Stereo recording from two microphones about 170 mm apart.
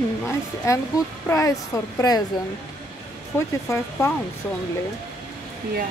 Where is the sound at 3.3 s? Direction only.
15° left (ahead or behind).